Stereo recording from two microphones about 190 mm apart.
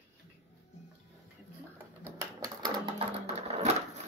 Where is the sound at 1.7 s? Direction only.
15° right (ahead or behind).